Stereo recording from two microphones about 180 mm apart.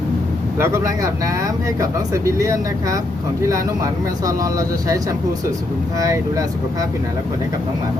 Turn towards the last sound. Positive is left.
turn(degrees=-20)  # may be behind; listen again after turning